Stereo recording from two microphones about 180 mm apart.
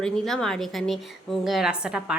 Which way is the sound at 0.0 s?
5° left (ahead or behind).